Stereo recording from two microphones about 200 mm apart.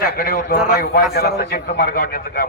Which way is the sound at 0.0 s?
45° left (ahead or behind).